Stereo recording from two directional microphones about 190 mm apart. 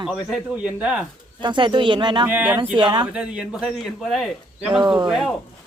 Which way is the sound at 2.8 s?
25° right (ahead or behind).